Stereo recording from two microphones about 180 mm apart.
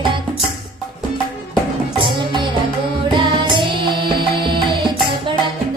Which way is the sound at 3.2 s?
25° right (ahead or behind).